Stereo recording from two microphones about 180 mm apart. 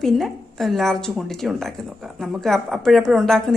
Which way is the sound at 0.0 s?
Centre (ahead or behind).